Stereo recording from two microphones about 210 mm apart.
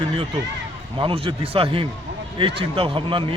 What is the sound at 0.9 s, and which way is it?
A man's voice, 25° right (ahead or behind).